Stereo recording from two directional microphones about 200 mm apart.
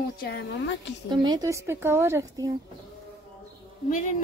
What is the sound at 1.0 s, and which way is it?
A woman's voice, 20° right (ahead or behind).